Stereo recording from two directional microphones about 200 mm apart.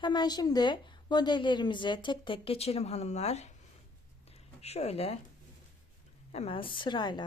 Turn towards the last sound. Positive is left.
turn(degrees=20)  # may be behind; listen again after turning